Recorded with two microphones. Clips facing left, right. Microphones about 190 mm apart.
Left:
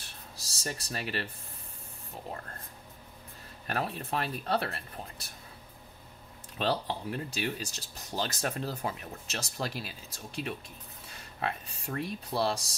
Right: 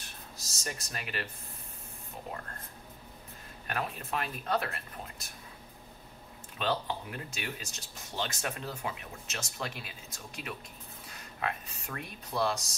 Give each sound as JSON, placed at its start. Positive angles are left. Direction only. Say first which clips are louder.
{"t": 0.4, "sound": "speech", "louder": "left 3 dB", "side_deg": 35}
{"t": 3.6, "sound": "speech", "louder": "left 3 dB", "side_deg": 35}
{"t": 6.6, "sound": "speech", "louder": "left 2 dB", "side_deg": 35}